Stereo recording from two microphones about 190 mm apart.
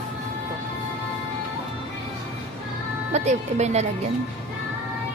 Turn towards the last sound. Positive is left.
turn(degrees=-35)  # may be behind; listen again after turning